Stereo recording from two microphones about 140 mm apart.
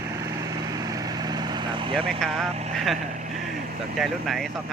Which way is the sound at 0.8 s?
25° right (ahead or behind).